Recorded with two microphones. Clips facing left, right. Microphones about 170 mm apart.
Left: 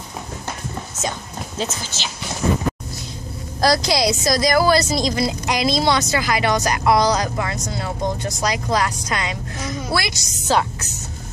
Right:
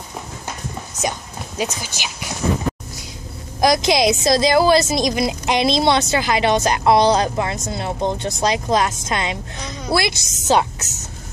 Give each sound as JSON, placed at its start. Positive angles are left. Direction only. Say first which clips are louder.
{"t": 1.8, "sound": "speech", "louder": "even", "side_deg": -15}
{"t": 3.6, "sound": "a woman's voice", "louder": "right 2 dB", "side_deg": -20}